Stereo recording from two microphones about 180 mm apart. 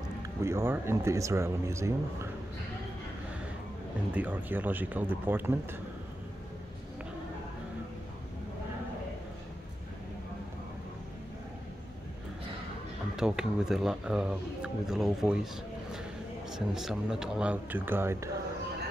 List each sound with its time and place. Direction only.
0.4 s speech: 15° right (ahead or behind)
4.1 s speech: 10° right (ahead or behind)
13.1 s speech: 5° right (ahead or behind)
16.4 s speech: centre (ahead or behind)